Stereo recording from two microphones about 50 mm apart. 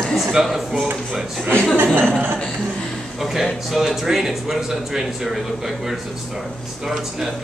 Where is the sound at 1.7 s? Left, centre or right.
Right.